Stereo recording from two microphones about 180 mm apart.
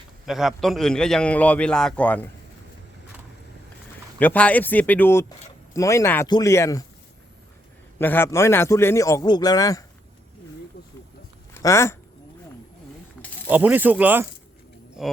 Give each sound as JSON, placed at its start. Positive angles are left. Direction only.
{"t": 0.3, "sound": "a man's voice", "side_deg": 0}
{"t": 4.2, "sound": "a man's voice", "side_deg": 10}
{"t": 7.9, "sound": "a man's voice", "side_deg": 10}
{"t": 11.5, "sound": "speech", "side_deg": 15}
{"t": 13.5, "sound": "a man's voice", "side_deg": -10}